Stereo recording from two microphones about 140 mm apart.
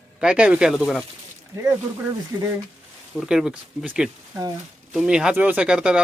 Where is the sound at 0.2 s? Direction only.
5° right (ahead or behind).